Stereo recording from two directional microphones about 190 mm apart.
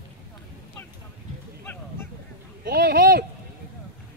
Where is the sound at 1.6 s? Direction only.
10° left (ahead or behind).